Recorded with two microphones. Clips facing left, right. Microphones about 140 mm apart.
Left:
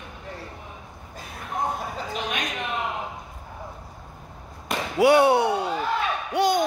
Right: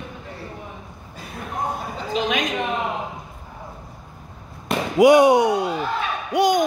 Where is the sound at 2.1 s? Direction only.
90° right.